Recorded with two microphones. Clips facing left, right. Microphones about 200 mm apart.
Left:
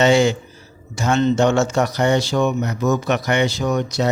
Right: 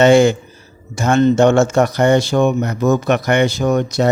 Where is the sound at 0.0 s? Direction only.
55° right (ahead or behind).